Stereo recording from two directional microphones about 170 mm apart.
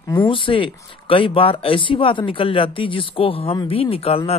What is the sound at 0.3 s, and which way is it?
Speech, 30° left (ahead or behind).